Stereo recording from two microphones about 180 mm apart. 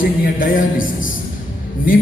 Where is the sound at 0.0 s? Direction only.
50° left (ahead or behind).